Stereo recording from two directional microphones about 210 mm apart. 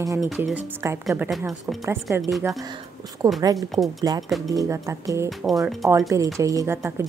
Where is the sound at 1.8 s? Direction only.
15° right (ahead or behind).